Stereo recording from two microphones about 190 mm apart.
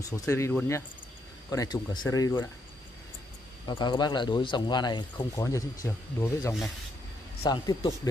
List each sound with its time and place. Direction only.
0.1 s speech: 15° left (ahead or behind)
3.6 s speech: 25° left (ahead or behind)